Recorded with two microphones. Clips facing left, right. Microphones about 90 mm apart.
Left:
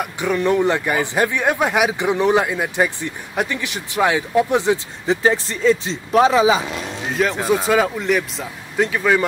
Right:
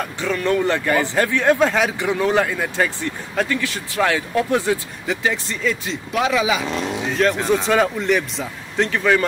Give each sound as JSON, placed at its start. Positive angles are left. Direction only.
{"t": 0.0, "sound": "speech", "side_deg": 15}
{"t": 5.1, "sound": "speech", "side_deg": 35}
{"t": 6.7, "sound": "speech", "side_deg": 5}